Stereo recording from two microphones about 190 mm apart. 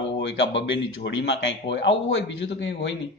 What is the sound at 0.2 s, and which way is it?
A man's voice, 70° left (ahead or behind).